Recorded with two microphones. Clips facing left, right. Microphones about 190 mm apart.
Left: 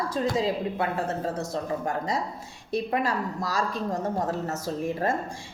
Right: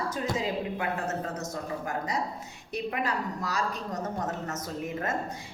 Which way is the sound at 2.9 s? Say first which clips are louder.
Left 2 dB; 35° left (ahead or behind).